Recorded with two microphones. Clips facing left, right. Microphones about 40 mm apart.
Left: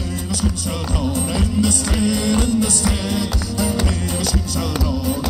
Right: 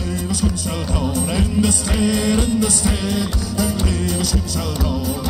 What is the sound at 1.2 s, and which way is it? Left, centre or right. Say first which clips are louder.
Music: right 1 dB; right.